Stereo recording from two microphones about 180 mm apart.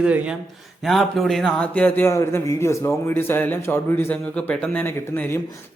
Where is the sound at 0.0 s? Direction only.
5° right (ahead or behind).